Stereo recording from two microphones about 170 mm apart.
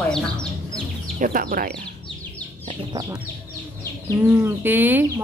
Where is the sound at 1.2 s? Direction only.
55° right (ahead or behind).